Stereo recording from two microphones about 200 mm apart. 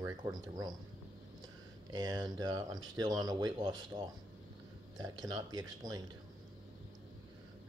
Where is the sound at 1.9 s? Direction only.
20° right (ahead or behind).